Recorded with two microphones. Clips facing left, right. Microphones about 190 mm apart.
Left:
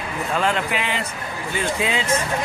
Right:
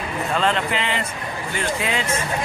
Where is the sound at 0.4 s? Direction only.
15° left (ahead or behind).